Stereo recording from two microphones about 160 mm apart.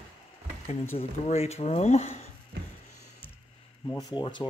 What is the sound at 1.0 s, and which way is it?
Speech, 40° left (ahead or behind).